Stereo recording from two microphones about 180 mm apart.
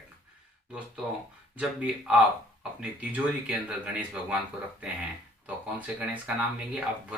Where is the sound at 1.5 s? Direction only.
5° right (ahead or behind).